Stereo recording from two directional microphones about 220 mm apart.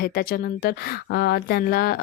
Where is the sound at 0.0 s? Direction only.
40° left (ahead or behind).